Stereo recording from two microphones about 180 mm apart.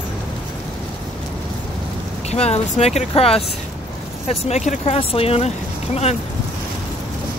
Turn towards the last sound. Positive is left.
turn(degrees=35)  # may be behind; listen again after turning